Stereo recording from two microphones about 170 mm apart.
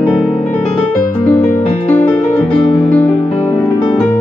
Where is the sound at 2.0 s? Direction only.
5° left (ahead or behind).